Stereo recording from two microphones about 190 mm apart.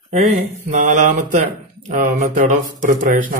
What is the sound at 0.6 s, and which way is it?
Speech, 40° right (ahead or behind).